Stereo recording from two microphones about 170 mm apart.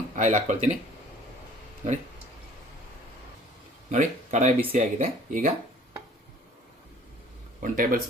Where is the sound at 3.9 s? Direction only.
45° right (ahead or behind).